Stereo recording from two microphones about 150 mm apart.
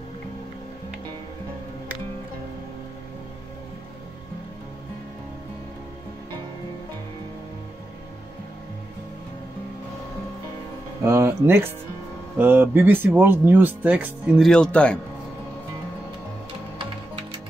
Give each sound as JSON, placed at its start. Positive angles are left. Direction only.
{"t": 11.1, "sound": "speech", "side_deg": -15}
{"t": 14.5, "sound": "a man's voice", "side_deg": 5}
{"t": 16.7, "sound": "music", "side_deg": -35}